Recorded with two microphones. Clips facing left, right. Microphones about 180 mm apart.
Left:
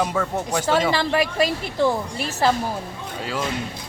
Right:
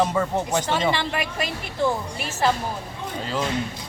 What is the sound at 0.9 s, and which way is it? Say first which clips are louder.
Speech: left 5 dB; 35° left (ahead or behind).